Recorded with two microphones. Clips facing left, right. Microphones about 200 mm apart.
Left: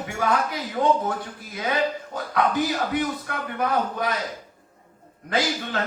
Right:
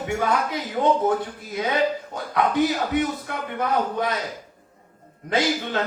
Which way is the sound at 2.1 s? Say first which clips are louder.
Even; 25° right (ahead or behind).